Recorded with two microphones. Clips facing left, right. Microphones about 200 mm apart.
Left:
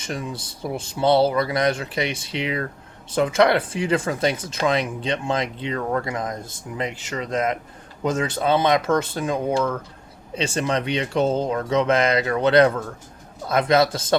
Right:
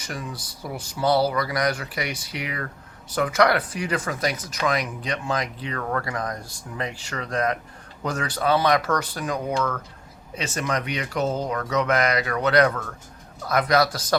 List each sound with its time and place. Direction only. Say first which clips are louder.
0.0 s speech: left 4 dB; 25° left (ahead or behind)